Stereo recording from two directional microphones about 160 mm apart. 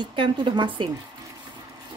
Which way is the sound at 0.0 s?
30° right (ahead or behind).